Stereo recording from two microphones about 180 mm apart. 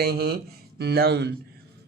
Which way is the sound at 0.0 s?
60° right (ahead or behind).